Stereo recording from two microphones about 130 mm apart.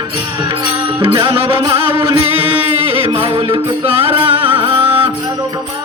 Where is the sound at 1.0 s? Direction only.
40° right (ahead or behind).